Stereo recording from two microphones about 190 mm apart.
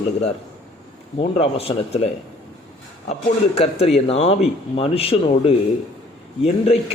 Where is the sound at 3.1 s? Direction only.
35° left (ahead or behind).